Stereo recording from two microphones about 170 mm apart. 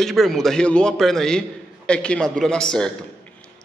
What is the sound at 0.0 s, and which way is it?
A man's voice, centre (ahead or behind).